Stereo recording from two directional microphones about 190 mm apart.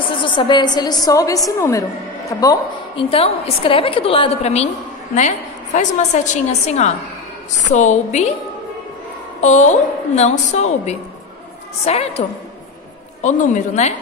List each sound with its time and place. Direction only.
0.2 s a woman's voice: 25° left (ahead or behind)
5.8 s a woman's voice: 40° left (ahead or behind)
9.4 s a woman's voice: 40° left (ahead or behind)